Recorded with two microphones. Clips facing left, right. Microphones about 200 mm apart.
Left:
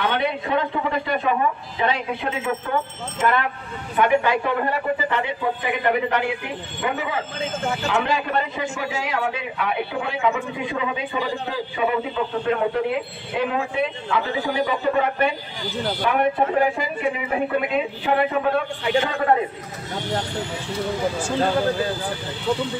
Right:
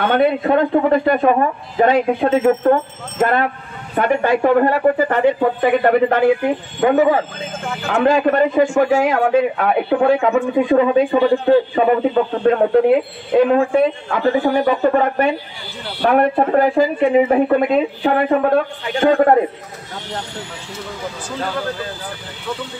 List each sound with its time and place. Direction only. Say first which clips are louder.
0.1 s a man's voice: right 8 dB; 50° right (ahead or behind)
16.0 s speech: right 7 dB; 60° right (ahead or behind)
16.7 s a man's voice: right 12 dB; 40° right (ahead or behind)
21.4 s speech: left 3 dB; 25° left (ahead or behind)